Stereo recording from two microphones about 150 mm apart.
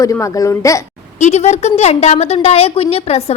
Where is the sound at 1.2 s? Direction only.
50° left (ahead or behind).